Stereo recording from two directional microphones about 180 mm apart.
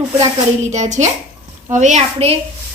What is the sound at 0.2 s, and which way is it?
A woman's voice, 40° right (ahead or behind).